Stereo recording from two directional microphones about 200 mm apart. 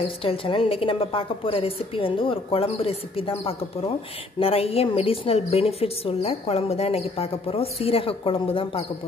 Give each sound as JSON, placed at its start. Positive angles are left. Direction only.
{"t": 0.0, "sound": "a woman's voice", "side_deg": 25}